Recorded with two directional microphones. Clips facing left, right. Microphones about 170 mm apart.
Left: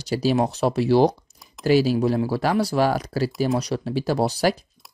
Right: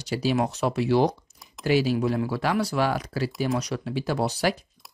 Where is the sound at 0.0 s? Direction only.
35° left (ahead or behind).